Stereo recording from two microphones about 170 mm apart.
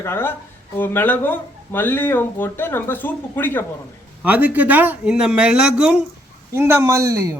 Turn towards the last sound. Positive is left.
turn(degrees=-15)  # may be behind; listen again after turning